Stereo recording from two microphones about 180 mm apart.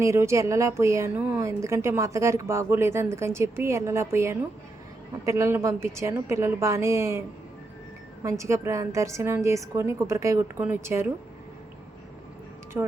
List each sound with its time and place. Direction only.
0.0 s speech: 15° right (ahead or behind)
8.2 s speech: 15° right (ahead or behind)
12.7 s speech: 15° right (ahead or behind)